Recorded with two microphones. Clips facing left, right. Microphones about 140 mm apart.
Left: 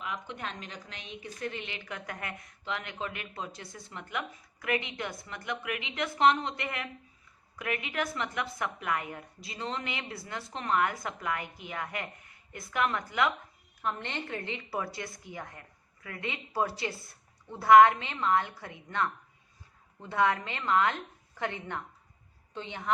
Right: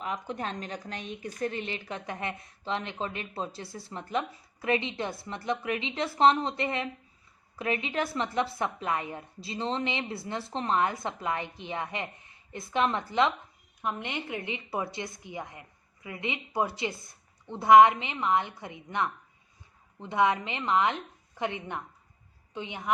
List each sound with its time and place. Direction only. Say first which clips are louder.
0.0 s a woman's voice: right 4 dB; 35° right (ahead or behind)
13.8 s a woman's voice: right 1 dB; 15° right (ahead or behind)